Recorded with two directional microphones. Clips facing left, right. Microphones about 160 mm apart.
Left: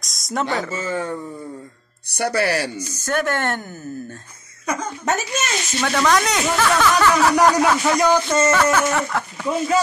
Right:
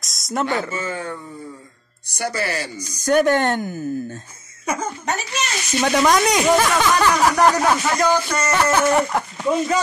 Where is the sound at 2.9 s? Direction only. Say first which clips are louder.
Right 8 dB; 15° right (ahead or behind).